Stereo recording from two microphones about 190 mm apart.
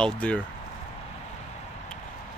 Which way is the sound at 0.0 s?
5° left (ahead or behind).